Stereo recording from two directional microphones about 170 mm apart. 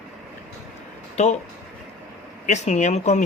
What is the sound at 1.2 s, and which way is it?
Speech, 40° left (ahead or behind).